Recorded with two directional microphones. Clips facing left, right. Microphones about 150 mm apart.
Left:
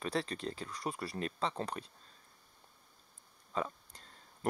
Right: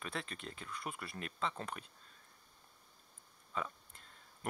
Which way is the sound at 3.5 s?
35° left (ahead or behind).